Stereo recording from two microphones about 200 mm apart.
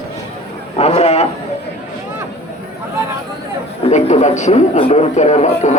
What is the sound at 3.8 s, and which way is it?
Speech, 35° left (ahead or behind).